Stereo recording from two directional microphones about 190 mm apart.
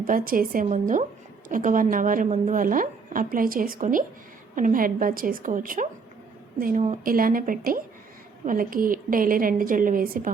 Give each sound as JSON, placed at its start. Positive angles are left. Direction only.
{"t": 0.0, "sound": "a woman's voice", "side_deg": -50}